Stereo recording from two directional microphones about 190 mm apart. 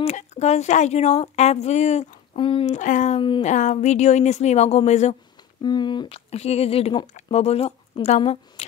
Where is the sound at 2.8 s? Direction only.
40° left (ahead or behind).